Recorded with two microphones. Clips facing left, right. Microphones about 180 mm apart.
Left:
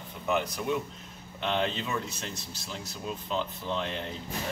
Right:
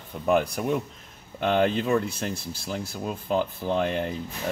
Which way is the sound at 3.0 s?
50° right (ahead or behind).